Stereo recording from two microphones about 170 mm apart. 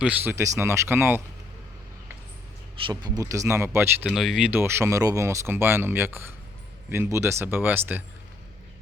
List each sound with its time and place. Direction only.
0.0 s speech: 10° right (ahead or behind)
2.8 s speech: 25° right (ahead or behind)
4.0 s speech: centre (ahead or behind)